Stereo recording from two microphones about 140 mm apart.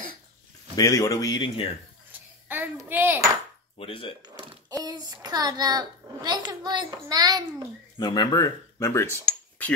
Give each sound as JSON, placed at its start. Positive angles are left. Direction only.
{"t": 0.7, "sound": "speech", "side_deg": 25}
{"t": 2.4, "sound": "speech", "side_deg": -15}
{"t": 3.7, "sound": "speech", "side_deg": 40}
{"t": 4.2, "sound": "a sound", "side_deg": -30}
{"t": 4.8, "sound": "a child's voice", "side_deg": -25}
{"t": 8.0, "sound": "speech", "side_deg": 30}